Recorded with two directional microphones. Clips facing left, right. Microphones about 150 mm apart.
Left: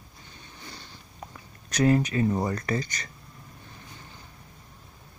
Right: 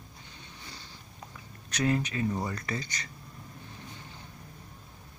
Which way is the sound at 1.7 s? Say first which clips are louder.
Left 6 dB; 40° left (ahead or behind).